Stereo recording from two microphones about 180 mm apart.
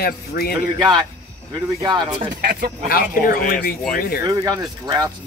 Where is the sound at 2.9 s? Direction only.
55° left (ahead or behind).